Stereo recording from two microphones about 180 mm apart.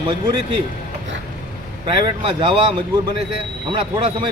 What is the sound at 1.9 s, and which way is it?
Speech, 25° right (ahead or behind).